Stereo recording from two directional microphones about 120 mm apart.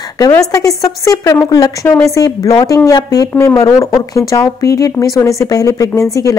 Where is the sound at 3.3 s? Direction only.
15° left (ahead or behind).